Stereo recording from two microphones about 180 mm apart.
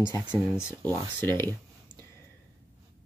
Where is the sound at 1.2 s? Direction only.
10° left (ahead or behind).